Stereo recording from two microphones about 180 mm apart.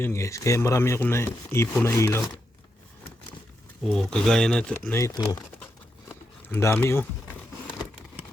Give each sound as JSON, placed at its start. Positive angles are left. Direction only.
{"t": 0.0, "sound": "speech", "side_deg": 15}
{"t": 3.8, "sound": "speech", "side_deg": 5}
{"t": 6.1, "sound": "a sound", "side_deg": 15}